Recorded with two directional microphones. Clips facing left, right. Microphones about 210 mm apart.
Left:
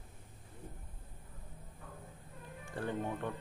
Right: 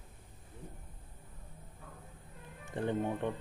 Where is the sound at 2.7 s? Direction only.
20° right (ahead or behind).